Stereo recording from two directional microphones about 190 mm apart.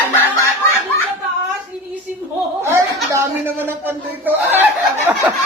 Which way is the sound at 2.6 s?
15° right (ahead or behind).